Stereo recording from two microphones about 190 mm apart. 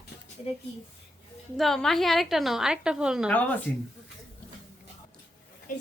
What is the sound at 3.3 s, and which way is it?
Speech, 10° left (ahead or behind).